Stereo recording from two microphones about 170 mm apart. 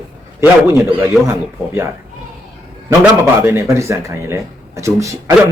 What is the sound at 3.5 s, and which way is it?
A man's voice, 15° right (ahead or behind).